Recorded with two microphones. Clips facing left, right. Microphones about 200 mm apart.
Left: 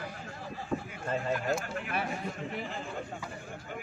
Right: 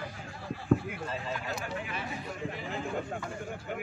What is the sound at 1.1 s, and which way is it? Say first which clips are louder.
Speech: left 9 dB; 50° left (ahead or behind).